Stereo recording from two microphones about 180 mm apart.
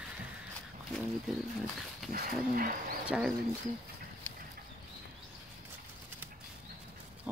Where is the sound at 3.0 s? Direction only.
5° right (ahead or behind).